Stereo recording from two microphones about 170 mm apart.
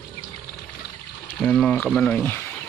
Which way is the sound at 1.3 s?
5° left (ahead or behind).